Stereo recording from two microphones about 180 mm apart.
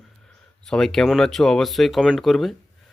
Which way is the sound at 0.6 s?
5° left (ahead or behind).